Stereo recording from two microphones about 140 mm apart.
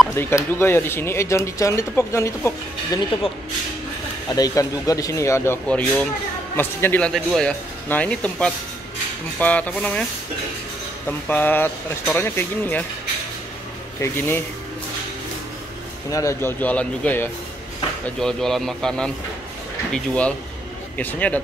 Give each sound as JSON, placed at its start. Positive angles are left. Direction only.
{"t": 0.1, "sound": "speech", "side_deg": 20}
{"t": 4.3, "sound": "speech", "side_deg": 25}
{"t": 5.7, "sound": "speech", "side_deg": 10}
{"t": 11.1, "sound": "speech", "side_deg": 15}
{"t": 14.0, "sound": "speech", "side_deg": 15}
{"t": 16.1, "sound": "speech", "side_deg": 20}